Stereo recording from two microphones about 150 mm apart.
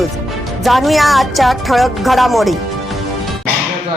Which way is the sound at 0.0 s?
Centre (ahead or behind).